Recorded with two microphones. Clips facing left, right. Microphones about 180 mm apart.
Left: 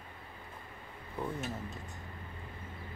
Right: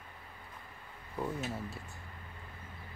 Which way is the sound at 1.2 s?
5° right (ahead or behind).